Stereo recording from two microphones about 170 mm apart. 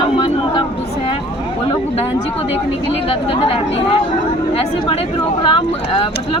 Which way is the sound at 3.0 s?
35° left (ahead or behind).